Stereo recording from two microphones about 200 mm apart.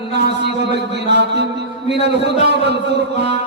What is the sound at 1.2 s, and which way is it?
Music, 60° right (ahead or behind).